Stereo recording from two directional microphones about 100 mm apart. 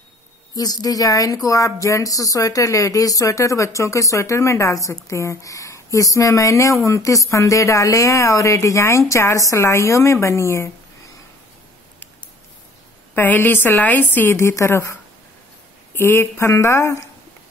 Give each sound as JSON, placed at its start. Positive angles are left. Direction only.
{"t": 0.6, "sound": "a woman's voice", "side_deg": 40}
{"t": 13.1, "sound": "a woman's voice", "side_deg": 20}